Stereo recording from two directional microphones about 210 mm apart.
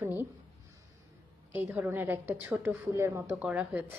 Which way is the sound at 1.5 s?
10° right (ahead or behind).